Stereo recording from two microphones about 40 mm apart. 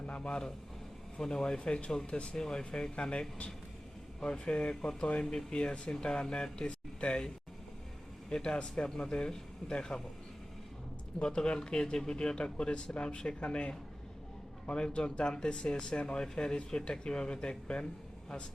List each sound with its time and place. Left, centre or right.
0.0 s a man's voice: left
1.1 s speech: centre
4.7 s speech: centre
4.9 s speech: left
5.2 s speech: centre
5.5 s speech: left
8.3 s speech: left
11.2 s speech: left
14.9 s speech: left